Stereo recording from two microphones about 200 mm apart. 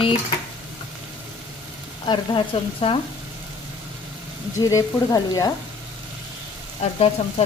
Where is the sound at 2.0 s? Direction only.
25° left (ahead or behind).